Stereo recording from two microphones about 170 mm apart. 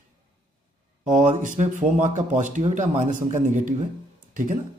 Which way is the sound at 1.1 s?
45° right (ahead or behind).